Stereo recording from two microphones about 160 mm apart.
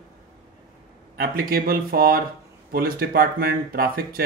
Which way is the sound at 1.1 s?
70° right (ahead or behind).